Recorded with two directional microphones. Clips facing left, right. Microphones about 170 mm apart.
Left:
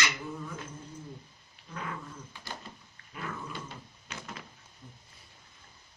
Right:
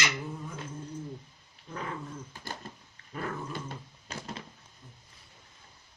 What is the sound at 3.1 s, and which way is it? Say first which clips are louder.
Dog: right 4 dB; 45° right (ahead or behind).